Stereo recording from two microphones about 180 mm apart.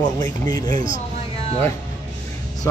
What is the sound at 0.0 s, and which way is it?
Speech, 20° left (ahead or behind).